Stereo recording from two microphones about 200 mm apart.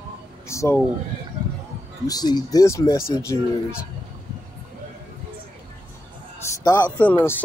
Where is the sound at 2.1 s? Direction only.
20° left (ahead or behind).